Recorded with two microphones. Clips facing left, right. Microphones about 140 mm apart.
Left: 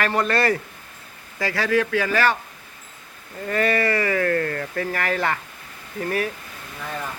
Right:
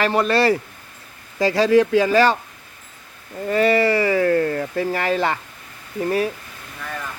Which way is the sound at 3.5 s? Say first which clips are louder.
Right 5 dB; 20° right (ahead or behind).